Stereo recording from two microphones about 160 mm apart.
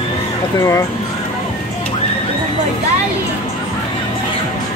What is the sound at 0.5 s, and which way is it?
Speech, 20° left (ahead or behind).